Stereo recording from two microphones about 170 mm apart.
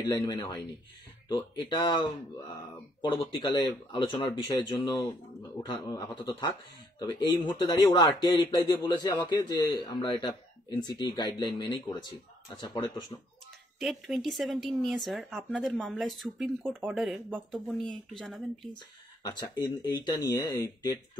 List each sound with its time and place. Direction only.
0.0 s speech: 20° left (ahead or behind)
9.9 s speech: 30° left (ahead or behind)
13.7 s speech: centre (ahead or behind)
19.2 s speech: 25° left (ahead or behind)